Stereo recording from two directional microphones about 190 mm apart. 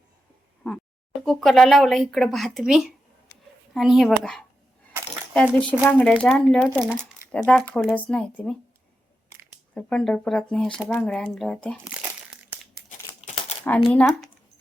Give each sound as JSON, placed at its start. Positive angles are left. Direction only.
{"t": 1.2, "sound": "speech", "side_deg": 0}
{"t": 9.7, "sound": "speech", "side_deg": 5}
{"t": 13.2, "sound": "crumpling", "side_deg": 35}
{"t": 13.9, "sound": "speech", "side_deg": 5}